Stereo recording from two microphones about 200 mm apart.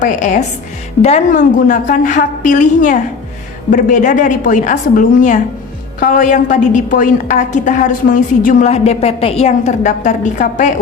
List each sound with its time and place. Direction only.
0.0 s a woman's voice: 40° left (ahead or behind)